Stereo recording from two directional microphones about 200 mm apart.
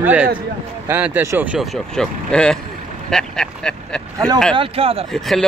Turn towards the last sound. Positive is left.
turn(degrees=0)  # may be behind; listen again after turning